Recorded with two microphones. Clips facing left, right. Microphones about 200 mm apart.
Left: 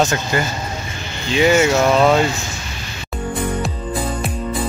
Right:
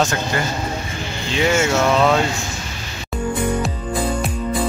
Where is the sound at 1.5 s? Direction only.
10° left (ahead or behind).